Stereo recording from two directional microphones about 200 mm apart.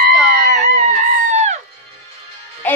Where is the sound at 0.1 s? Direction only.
5° right (ahead or behind).